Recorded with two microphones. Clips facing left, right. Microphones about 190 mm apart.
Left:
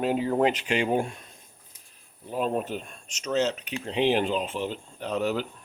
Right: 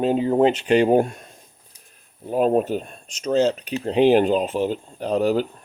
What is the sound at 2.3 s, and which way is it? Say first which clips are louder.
Speech: right 9 dB; 45° right (ahead or behind).